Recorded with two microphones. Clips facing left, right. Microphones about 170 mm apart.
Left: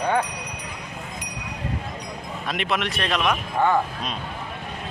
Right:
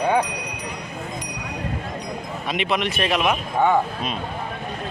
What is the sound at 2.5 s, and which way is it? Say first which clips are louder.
Speech: right 3 dB; centre (ahead or behind).